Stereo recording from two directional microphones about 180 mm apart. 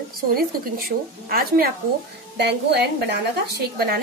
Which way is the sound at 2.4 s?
65° right (ahead or behind).